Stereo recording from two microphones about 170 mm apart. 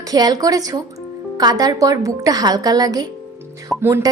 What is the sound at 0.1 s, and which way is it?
A woman's voice, 20° right (ahead or behind).